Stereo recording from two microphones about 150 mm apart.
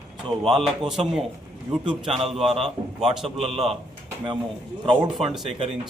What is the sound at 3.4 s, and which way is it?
Speech, 40° right (ahead or behind).